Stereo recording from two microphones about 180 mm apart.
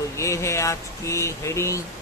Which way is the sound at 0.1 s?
15° left (ahead or behind).